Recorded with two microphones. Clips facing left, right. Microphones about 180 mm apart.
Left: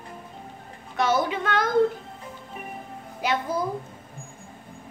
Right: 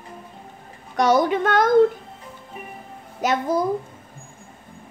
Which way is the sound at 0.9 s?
45° right (ahead or behind).